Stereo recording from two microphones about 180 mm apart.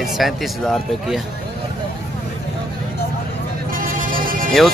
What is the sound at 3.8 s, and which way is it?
Music, 50° right (ahead or behind).